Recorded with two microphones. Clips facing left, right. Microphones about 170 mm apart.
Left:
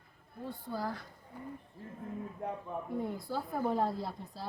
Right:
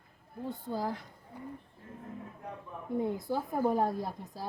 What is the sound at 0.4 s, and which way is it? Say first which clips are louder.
Speech: right 3 dB; 20° right (ahead or behind).